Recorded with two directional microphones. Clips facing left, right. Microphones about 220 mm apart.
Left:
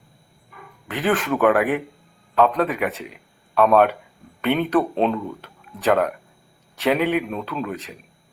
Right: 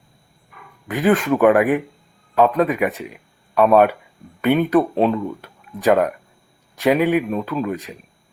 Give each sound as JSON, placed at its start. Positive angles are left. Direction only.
{"t": 1.0, "sound": "a man's voice", "side_deg": -10}